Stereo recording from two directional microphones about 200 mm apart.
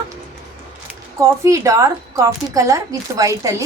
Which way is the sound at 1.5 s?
15° right (ahead or behind).